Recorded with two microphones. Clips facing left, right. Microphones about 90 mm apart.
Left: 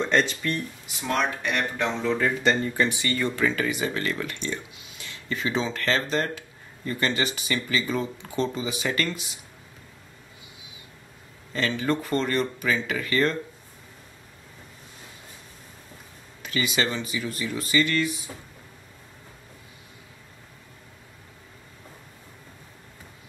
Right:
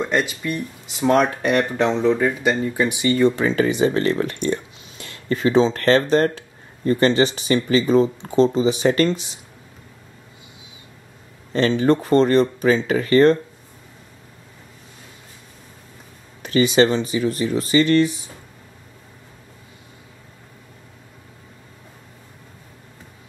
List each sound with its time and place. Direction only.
0.0 s speech: 10° right (ahead or behind)
1.0 s speech: 35° right (ahead or behind)
4.4 s speech: 45° right (ahead or behind)
6.3 s speech: 35° right (ahead or behind)
11.5 s speech: 30° right (ahead or behind)
16.4 s speech: 35° right (ahead or behind)